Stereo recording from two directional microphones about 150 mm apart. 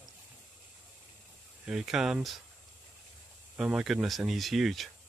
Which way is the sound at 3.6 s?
5° right (ahead or behind).